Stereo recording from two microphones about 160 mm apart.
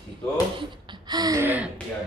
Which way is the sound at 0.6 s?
30° right (ahead or behind).